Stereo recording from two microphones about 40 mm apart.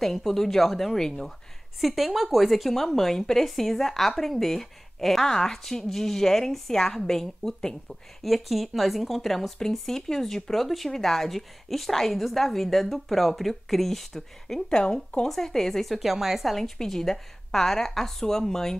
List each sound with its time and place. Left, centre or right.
0.0 s a woman's voice: centre
1.8 s a woman's voice: centre
8.2 s a woman's voice: centre
14.7 s a woman's voice: centre
15.2 s a woman's voice: centre
16.5 s a woman's voice: centre